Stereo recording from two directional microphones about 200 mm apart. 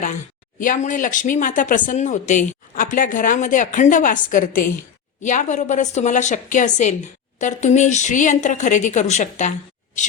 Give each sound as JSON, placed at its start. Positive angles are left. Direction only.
{"t": 0.6, "sound": "speech", "side_deg": 40}